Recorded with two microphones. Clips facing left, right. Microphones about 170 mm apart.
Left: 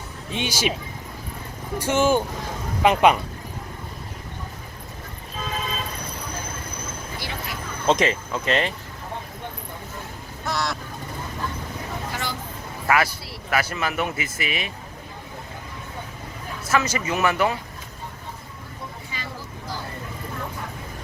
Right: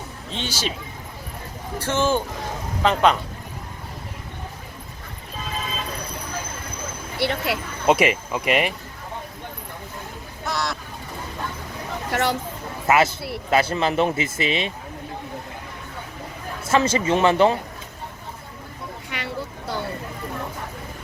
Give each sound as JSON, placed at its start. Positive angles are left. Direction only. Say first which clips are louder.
{"t": 0.3, "sound": "speech", "louder": "left 3 dB", "side_deg": 10}
{"t": 1.8, "sound": "speech", "louder": "left 2 dB", "side_deg": 10}
{"t": 7.2, "sound": "speech", "louder": "right 13 dB", "side_deg": -70}
{"t": 7.9, "sound": "speech", "louder": "right 2 dB", "side_deg": -15}
{"t": 10.4, "sound": "speech", "louder": "even", "side_deg": 0}
{"t": 12.1, "sound": "speech", "louder": "right 12 dB", "side_deg": -70}
{"t": 12.9, "sound": "speech", "louder": "right 3 dB", "side_deg": -25}
{"t": 16.6, "sound": "speech", "louder": "right 4 dB", "side_deg": -25}
{"t": 19.1, "sound": "a sound", "louder": "right 5 dB", "side_deg": -70}